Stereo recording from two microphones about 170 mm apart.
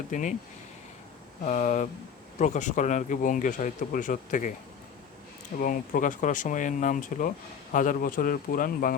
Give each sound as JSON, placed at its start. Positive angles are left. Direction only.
{"t": 0.1, "sound": "speech", "side_deg": 45}
{"t": 1.5, "sound": "speech", "side_deg": 45}
{"t": 5.5, "sound": "speech", "side_deg": 55}